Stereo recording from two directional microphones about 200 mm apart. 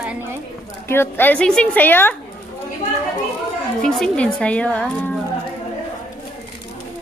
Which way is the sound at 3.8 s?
5° left (ahead or behind).